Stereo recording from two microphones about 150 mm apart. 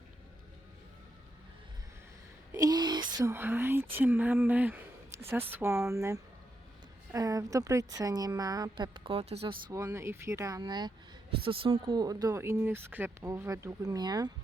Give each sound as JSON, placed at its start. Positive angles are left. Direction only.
{"t": 2.5, "sound": "speech", "side_deg": -25}
{"t": 3.3, "sound": "speech", "side_deg": -15}
{"t": 9.7, "sound": "speech", "side_deg": -20}